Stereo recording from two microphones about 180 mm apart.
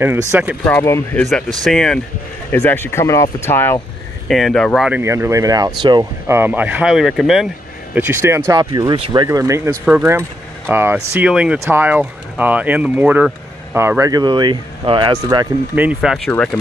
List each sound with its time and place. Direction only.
0.3 s speech: 10° right (ahead or behind)
0.7 s speech: 15° left (ahead or behind)
1.6 s speech: centre (ahead or behind)
2.5 s speech: 10° left (ahead or behind)
4.3 s speech: centre (ahead or behind)
7.9 s speech: 15° right (ahead or behind)
15.7 s speech: 10° right (ahead or behind)